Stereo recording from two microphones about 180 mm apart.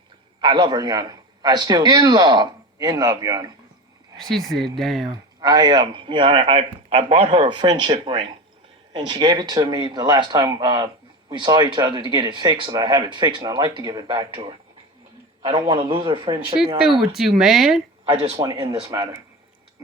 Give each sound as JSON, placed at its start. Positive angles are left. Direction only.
{"t": 0.4, "sound": "speech", "side_deg": -25}
{"t": 4.2, "sound": "speech", "side_deg": 0}
{"t": 5.1, "sound": "speech", "side_deg": -20}
{"t": 17.0, "sound": "speech", "side_deg": 0}
{"t": 18.1, "sound": "speech", "side_deg": -20}